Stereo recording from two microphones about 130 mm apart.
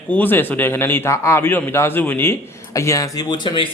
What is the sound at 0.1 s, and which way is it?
A man's voice, 15° left (ahead or behind).